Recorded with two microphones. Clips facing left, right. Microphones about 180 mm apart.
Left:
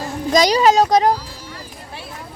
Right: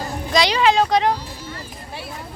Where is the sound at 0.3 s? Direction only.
40° left (ahead or behind).